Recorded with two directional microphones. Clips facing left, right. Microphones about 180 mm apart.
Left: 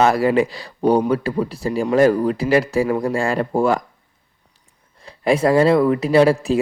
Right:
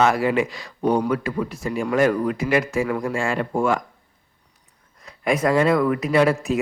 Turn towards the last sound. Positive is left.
turn(degrees=30)  # may be behind; listen again after turning